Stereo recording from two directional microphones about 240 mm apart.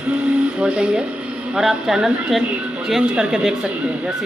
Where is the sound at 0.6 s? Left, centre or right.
Centre.